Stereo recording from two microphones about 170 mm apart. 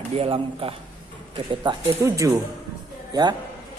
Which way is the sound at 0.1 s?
35° right (ahead or behind).